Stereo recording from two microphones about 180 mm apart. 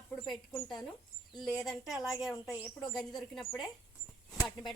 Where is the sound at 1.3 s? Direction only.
25° left (ahead or behind).